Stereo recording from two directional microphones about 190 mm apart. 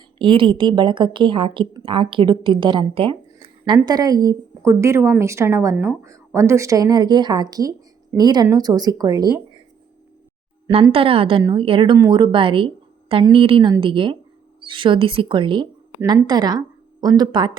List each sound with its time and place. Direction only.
0.2 s a woman's voice: 25° right (ahead or behind)
10.9 s a woman's voice: 30° right (ahead or behind)